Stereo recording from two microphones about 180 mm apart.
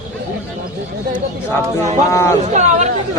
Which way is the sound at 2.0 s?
15° left (ahead or behind).